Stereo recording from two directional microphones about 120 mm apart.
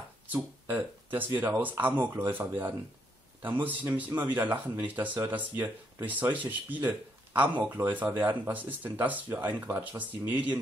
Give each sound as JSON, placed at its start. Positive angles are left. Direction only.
{"t": 0.3, "sound": "speech", "side_deg": -15}